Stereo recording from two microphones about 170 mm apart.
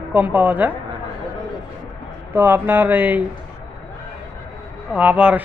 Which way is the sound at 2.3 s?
10° right (ahead or behind).